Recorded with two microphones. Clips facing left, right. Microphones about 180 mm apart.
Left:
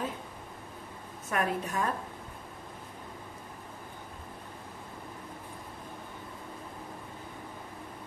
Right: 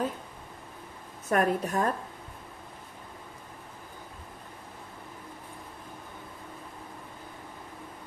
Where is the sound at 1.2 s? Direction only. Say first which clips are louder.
Right 5 dB; 40° right (ahead or behind).